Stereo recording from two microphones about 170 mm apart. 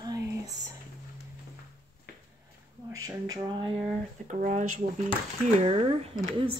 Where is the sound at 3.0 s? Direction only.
20° right (ahead or behind).